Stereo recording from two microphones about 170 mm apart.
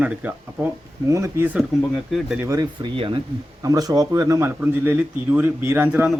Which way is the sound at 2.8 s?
30° right (ahead or behind).